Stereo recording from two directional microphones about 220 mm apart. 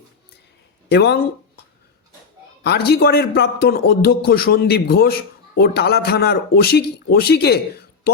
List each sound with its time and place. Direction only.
0.9 s speech: 50° left (ahead or behind)
2.6 s a man's voice: 45° left (ahead or behind)